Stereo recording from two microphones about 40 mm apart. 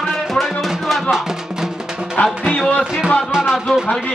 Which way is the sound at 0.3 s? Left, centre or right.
Centre.